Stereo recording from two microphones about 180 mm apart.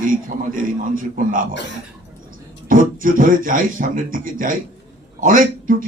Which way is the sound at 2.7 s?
50° right (ahead or behind).